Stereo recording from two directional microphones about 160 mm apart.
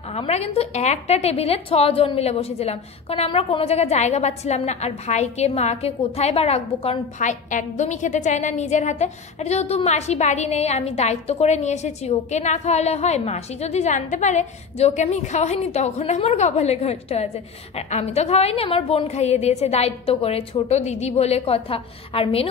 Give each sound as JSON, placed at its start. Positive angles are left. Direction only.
{"t": 0.1, "sound": "a woman's voice", "side_deg": 40}